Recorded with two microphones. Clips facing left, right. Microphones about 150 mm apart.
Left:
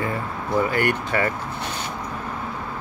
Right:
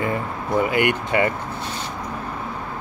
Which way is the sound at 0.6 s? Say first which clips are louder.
Right 2 dB; 15° right (ahead or behind).